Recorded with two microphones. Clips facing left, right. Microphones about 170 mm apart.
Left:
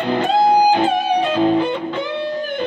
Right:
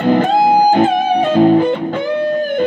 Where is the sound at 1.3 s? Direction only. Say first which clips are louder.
Right 8 dB; 45° right (ahead or behind).